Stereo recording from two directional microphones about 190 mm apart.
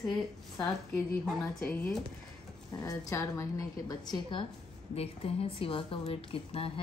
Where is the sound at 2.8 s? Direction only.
15° left (ahead or behind).